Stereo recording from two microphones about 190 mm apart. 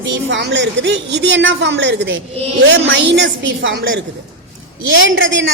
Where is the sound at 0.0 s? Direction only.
70° right (ahead or behind).